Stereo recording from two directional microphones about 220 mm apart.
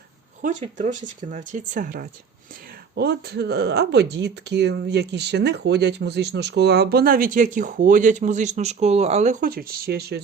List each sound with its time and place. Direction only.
0.4 s speech: 35° right (ahead or behind)